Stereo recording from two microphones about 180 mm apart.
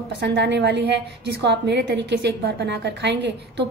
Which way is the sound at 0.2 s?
75° right (ahead or behind).